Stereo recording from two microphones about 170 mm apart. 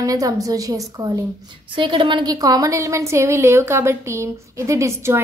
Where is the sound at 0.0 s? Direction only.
20° right (ahead or behind).